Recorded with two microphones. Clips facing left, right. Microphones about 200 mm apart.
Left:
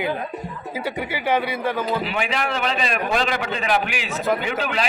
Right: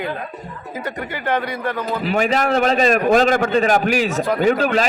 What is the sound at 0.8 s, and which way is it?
Speech, 5° left (ahead or behind).